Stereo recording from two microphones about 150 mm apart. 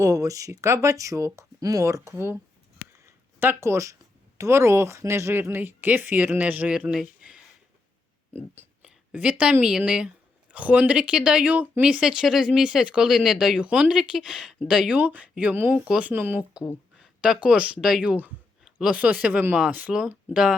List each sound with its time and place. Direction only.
0.0 s speech: 20° right (ahead or behind)
2.9 s a sound: 15° right (ahead or behind)
4.4 s speech: 20° right (ahead or behind)
8.5 s speech: 10° right (ahead or behind)